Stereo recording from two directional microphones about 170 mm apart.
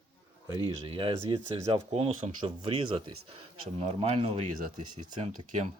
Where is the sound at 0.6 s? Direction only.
30° right (ahead or behind).